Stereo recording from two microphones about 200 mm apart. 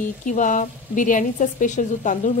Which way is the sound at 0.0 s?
40° left (ahead or behind).